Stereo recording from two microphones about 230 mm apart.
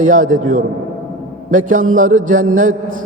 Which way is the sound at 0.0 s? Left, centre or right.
Right.